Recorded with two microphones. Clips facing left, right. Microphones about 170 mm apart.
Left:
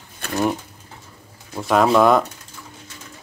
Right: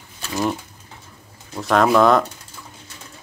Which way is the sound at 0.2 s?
55° left (ahead or behind).